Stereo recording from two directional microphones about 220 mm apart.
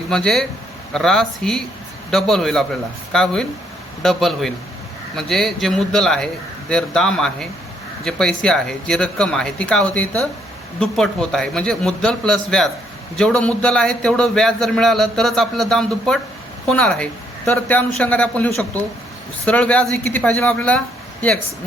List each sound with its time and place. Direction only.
0.1 s a man's voice: centre (ahead or behind)